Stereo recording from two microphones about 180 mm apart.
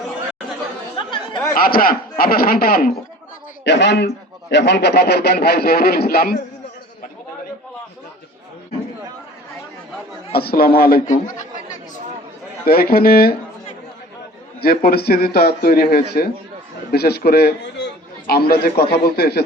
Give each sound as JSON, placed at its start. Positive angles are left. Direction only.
{"t": 0.9, "sound": "chatter", "side_deg": 25}
{"t": 1.5, "sound": "a man's voice", "side_deg": 55}
{"t": 3.6, "sound": "a man's voice", "side_deg": 75}
{"t": 10.3, "sound": "a man's voice", "side_deg": 60}
{"t": 12.6, "sound": "a man's voice", "side_deg": 55}
{"t": 14.6, "sound": "a man's voice", "side_deg": 55}